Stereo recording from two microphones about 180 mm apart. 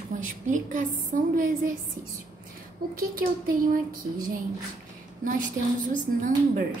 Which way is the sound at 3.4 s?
50° right (ahead or behind).